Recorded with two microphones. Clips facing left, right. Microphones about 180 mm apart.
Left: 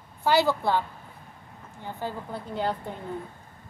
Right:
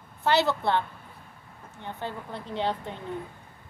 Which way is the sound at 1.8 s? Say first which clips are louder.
Left 2 dB; 5° left (ahead or behind).